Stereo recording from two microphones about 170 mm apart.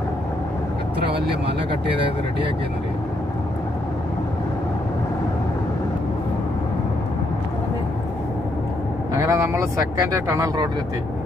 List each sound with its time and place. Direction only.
9.1 s speech: 15° right (ahead or behind)